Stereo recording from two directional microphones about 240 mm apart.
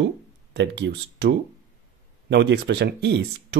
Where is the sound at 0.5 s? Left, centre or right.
Right.